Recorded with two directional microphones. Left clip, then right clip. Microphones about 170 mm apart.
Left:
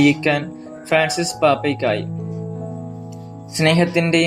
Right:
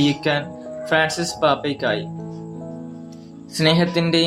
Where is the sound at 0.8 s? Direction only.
10° left (ahead or behind).